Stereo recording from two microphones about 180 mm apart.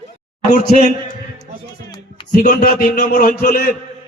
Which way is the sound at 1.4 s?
25° left (ahead or behind).